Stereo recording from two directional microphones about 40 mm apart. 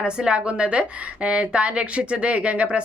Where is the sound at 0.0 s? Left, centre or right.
Right.